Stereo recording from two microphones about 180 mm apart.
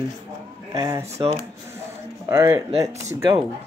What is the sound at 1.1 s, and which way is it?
Speech, 35° right (ahead or behind).